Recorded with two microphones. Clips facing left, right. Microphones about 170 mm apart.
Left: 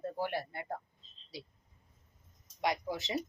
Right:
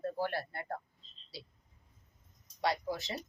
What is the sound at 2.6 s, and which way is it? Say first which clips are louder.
Speech: even; 15° left (ahead or behind).